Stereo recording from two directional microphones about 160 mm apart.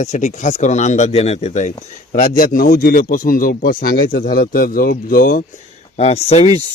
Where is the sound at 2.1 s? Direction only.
55° left (ahead or behind).